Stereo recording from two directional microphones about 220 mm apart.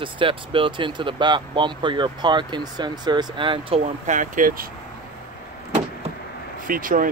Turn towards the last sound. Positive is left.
turn(degrees=-40)  # may be behind; listen again after turning